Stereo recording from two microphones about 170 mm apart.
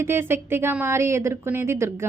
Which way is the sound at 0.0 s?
15° right (ahead or behind).